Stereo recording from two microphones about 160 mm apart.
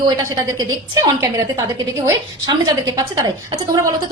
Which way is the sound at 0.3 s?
25° right (ahead or behind).